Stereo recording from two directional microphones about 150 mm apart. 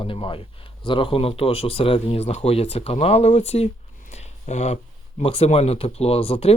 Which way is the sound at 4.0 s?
50° left (ahead or behind).